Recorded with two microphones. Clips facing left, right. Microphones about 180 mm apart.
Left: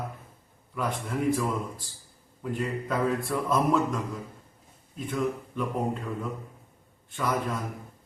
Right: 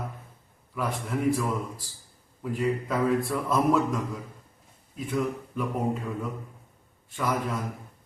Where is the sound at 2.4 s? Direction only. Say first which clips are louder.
Right 3 dB; 5° right (ahead or behind).